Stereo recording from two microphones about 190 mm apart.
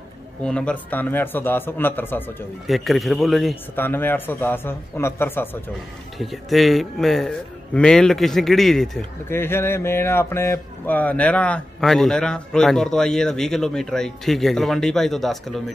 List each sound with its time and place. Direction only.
0.4 s a man's voice: 5° left (ahead or behind)
2.6 s speech: centre (ahead or behind)
3.7 s a man's voice: 10° left (ahead or behind)
6.1 s speech: centre (ahead or behind)
9.3 s speech: 10° left (ahead or behind)